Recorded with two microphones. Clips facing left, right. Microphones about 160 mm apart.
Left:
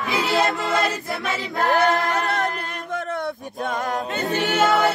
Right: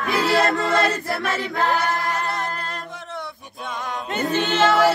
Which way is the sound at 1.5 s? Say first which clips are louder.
Left 2 dB; 45° left (ahead or behind).